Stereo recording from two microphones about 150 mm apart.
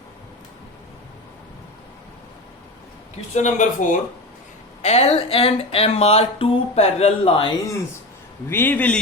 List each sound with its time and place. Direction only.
3.3 s speech: 55° left (ahead or behind)
4.8 s speech: 45° left (ahead or behind)
8.4 s a man's voice: 15° left (ahead or behind)